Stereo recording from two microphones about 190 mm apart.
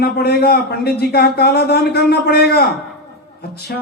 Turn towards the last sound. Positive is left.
turn(degrees=55)  # may be behind; listen again after turning